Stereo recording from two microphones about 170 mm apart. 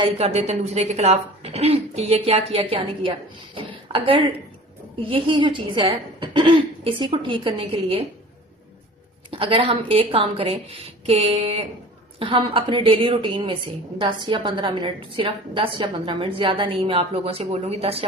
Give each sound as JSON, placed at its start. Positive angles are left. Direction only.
{"t": 0.0, "sound": "a woman's voice", "side_deg": -40}
{"t": 9.3, "sound": "speech", "side_deg": -35}